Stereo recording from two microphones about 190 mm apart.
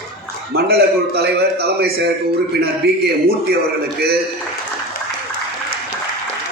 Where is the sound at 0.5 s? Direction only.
55° right (ahead or behind).